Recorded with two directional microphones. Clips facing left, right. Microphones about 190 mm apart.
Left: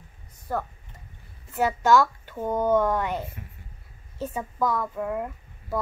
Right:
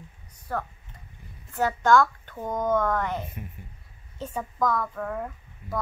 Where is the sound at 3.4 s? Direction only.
20° right (ahead or behind).